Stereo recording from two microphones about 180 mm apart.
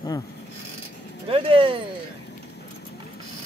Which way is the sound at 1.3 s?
30° right (ahead or behind).